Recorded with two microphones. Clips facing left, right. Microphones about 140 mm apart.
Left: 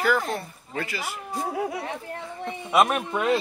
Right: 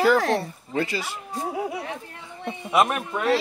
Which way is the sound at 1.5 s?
5° right (ahead or behind).